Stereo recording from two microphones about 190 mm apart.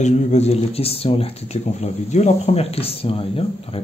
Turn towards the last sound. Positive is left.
turn(degrees=30)  # may be behind; listen again after turning